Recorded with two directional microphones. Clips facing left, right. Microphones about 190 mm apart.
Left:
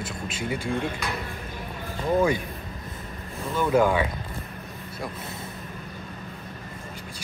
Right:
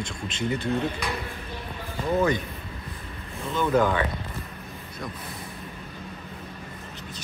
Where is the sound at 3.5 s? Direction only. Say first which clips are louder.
Left 1 dB; 10° left (ahead or behind).